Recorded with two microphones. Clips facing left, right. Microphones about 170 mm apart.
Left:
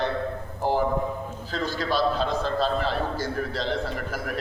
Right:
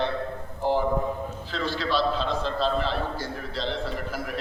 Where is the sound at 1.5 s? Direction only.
45° left (ahead or behind).